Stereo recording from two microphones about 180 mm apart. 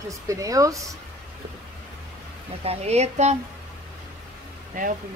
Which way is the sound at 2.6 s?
35° right (ahead or behind).